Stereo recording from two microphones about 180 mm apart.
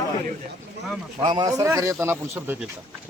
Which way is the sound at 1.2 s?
20° right (ahead or behind).